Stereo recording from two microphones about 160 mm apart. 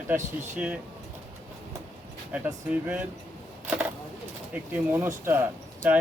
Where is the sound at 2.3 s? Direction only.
10° right (ahead or behind).